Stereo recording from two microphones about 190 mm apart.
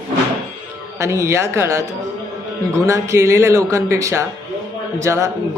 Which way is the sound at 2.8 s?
15° right (ahead or behind).